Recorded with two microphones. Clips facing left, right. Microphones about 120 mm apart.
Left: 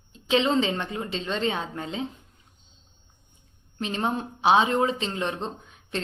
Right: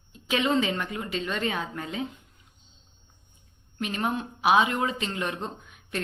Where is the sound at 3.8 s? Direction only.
30° left (ahead or behind).